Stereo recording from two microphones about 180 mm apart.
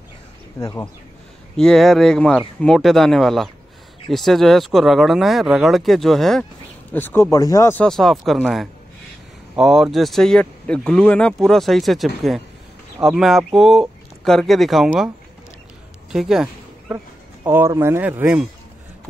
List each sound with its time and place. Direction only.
0.6 s speech: 20° left (ahead or behind)
1.6 s speech: centre (ahead or behind)
6.9 s speech: 10° left (ahead or behind)
7.7 s speech: 5° left (ahead or behind)
16.1 s speech: 5° right (ahead or behind)
16.9 s speech: 15° right (ahead or behind)